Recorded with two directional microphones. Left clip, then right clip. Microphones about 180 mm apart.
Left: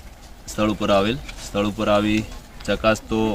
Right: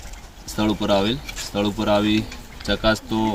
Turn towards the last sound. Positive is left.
turn(degrees=5)  # may be behind; listen again after turning